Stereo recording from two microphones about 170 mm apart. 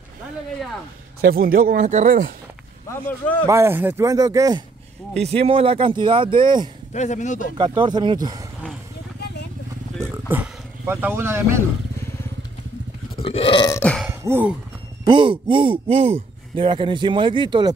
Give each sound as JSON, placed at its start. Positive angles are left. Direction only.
{"t": 1.3, "sound": "speech", "side_deg": -60}
{"t": 3.4, "sound": "speech", "side_deg": -15}
{"t": 5.2, "sound": "speech", "side_deg": -35}
{"t": 6.9, "sound": "a man's voice", "side_deg": 45}
{"t": 7.5, "sound": "speech", "side_deg": -30}
{"t": 10.3, "sound": "speech", "side_deg": -10}
{"t": 13.2, "sound": "burping", "side_deg": 35}
{"t": 13.7, "sound": "cowbell", "side_deg": 5}
{"t": 14.0, "sound": "a sound", "side_deg": -10}
{"t": 15.0, "sound": "speech", "side_deg": -30}